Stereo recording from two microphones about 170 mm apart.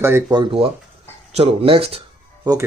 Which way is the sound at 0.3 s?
30° right (ahead or behind).